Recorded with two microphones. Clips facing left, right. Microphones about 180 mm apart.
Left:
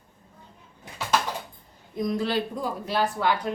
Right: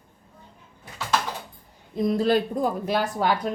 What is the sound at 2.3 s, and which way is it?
Speech, 50° right (ahead or behind).